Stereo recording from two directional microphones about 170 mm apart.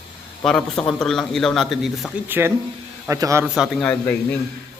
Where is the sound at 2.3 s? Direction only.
15° right (ahead or behind).